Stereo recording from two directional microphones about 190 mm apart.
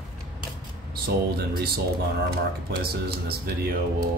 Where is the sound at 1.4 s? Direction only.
55° right (ahead or behind).